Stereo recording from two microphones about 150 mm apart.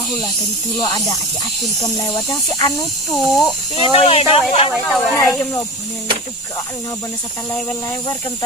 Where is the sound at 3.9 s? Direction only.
45° left (ahead or behind).